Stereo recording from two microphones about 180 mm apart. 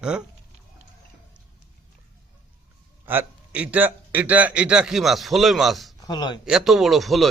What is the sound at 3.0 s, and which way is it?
A man's voice, 10° right (ahead or behind).